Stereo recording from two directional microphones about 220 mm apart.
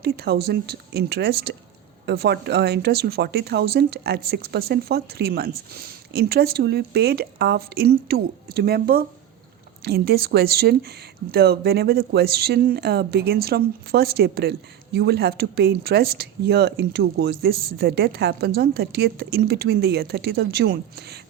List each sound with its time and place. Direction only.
0.0 s a woman's voice: 45° right (ahead or behind)